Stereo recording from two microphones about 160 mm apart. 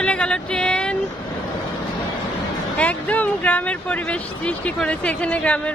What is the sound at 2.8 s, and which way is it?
Speech, 10° left (ahead or behind).